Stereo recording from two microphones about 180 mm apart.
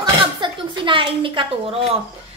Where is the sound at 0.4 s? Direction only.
30° right (ahead or behind).